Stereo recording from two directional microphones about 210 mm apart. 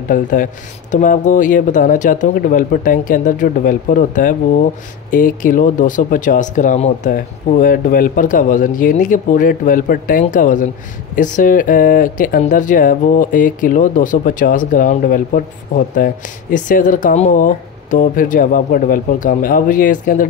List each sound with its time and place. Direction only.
0.1 s speech: 40° left (ahead or behind)